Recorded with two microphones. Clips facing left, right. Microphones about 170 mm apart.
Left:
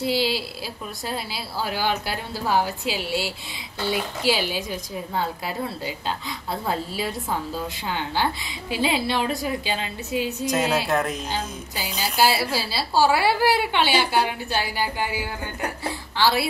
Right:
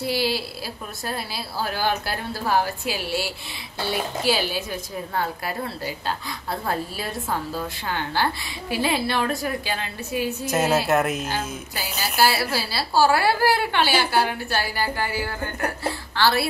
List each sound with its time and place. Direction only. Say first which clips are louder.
0.0 s a woman's voice: left 1 dB; 15° left (ahead or behind)
4.3 s a woman's voice: left 1 dB; 15° left (ahead or behind)
7.8 s a woman's voice: even; 15° left (ahead or behind)
10.4 s speech: right 2 dB; 5° right (ahead or behind)
12.0 s a woman's voice: even; 20° left (ahead or behind)